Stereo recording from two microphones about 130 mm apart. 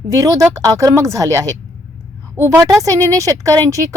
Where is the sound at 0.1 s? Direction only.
25° right (ahead or behind).